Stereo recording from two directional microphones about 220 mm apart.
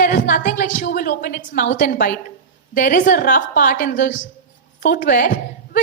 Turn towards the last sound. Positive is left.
turn(degrees=40)  # may be behind; listen again after turning